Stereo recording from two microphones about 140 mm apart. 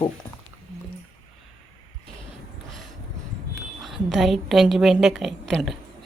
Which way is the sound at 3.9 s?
Centre (ahead or behind).